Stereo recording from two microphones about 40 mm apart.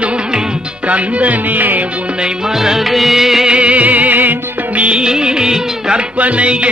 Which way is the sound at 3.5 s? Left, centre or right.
Right.